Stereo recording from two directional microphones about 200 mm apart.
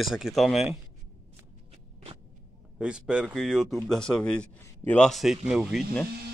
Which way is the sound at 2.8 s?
5° right (ahead or behind).